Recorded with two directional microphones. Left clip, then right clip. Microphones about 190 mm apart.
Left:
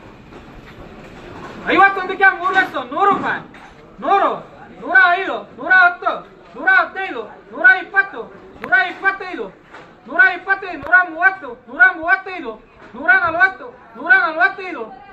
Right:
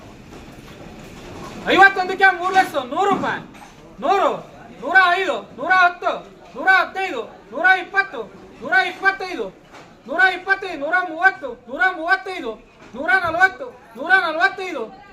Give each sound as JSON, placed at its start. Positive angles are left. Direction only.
{"t": 1.6, "sound": "a man's voice", "side_deg": -15}